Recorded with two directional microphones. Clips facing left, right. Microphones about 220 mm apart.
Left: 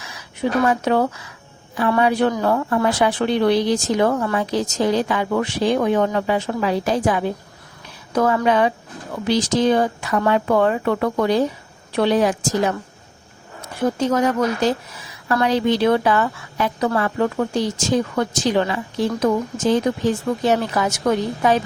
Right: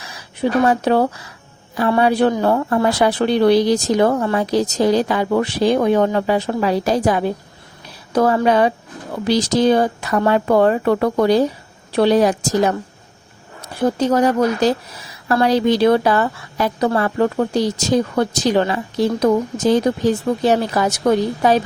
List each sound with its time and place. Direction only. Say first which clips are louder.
0.6 s a woman's voice: right 3 dB; 35° right (ahead or behind)
13.8 s a woman's voice: right 3 dB; 35° right (ahead or behind)